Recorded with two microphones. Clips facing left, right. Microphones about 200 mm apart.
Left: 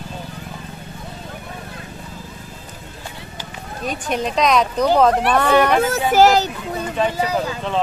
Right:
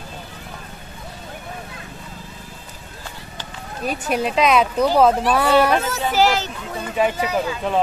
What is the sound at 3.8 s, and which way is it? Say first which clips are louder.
Speech: right 1 dB; 5° right (ahead or behind).